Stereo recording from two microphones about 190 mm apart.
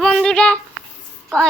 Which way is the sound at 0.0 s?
Centre (ahead or behind).